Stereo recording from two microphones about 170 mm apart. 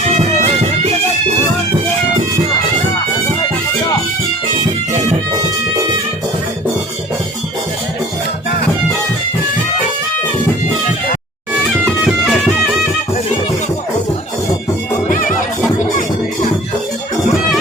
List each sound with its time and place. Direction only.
0.2 s music: 40° right (ahead or behind)
12.0 s music: centre (ahead or behind)
15.0 s music: 50° left (ahead or behind)